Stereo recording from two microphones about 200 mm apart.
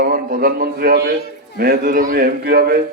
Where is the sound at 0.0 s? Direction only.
45° right (ahead or behind).